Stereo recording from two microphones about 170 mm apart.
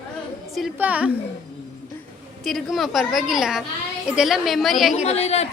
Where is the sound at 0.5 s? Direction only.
5° right (ahead or behind).